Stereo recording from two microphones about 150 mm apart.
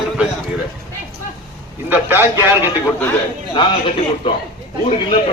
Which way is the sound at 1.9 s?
15° right (ahead or behind).